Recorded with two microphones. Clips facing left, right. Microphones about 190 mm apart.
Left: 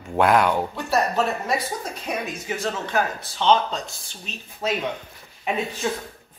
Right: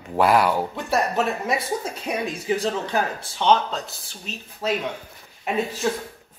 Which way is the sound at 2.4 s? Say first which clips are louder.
Right 4 dB; 30° right (ahead or behind).